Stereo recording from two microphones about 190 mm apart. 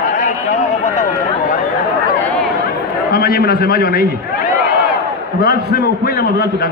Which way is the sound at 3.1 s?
55° left (ahead or behind).